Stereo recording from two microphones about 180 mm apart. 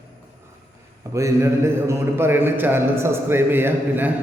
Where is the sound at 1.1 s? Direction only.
15° right (ahead or behind).